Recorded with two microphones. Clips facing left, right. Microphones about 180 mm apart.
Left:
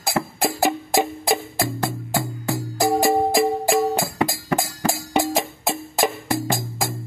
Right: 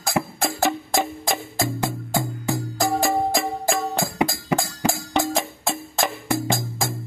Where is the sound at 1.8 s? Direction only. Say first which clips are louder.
Even; 15° right (ahead or behind).